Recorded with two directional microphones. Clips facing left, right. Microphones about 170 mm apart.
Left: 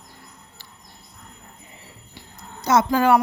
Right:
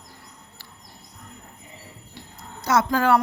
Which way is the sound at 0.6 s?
20° left (ahead or behind).